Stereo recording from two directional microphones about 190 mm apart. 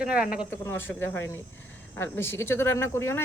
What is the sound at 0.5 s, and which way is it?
Speech, 10° left (ahead or behind).